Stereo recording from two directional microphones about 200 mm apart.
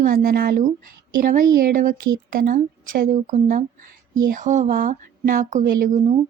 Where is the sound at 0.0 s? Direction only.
45° right (ahead or behind).